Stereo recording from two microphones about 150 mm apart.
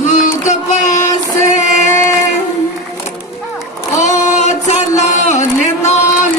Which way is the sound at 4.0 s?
50° left (ahead or behind).